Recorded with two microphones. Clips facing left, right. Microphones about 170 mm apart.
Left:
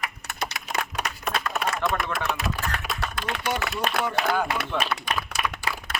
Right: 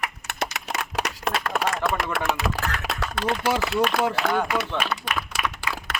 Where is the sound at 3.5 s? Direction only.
90° right.